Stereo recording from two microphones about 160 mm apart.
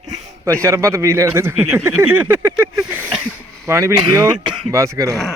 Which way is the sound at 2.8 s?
5° right (ahead or behind).